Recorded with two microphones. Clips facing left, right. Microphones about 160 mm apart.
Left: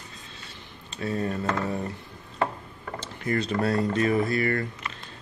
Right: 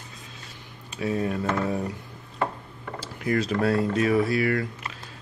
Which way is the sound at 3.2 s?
5° right (ahead or behind).